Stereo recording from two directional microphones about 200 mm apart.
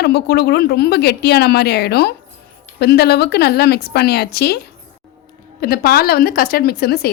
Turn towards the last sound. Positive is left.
turn(degrees=50)  # may be behind; listen again after turning